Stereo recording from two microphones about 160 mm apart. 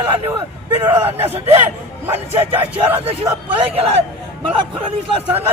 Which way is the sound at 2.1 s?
35° right (ahead or behind).